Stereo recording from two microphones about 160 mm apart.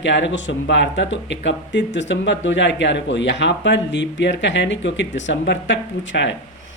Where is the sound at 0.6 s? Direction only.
90° left.